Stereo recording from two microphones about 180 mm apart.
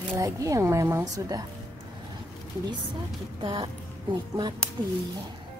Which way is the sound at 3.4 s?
25° right (ahead or behind).